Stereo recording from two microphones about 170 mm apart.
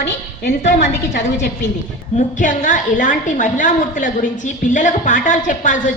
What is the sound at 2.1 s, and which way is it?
A woman's voice, 50° left (ahead or behind).